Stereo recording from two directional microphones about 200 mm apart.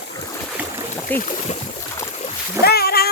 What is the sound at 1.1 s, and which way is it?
Speech, 35° left (ahead or behind).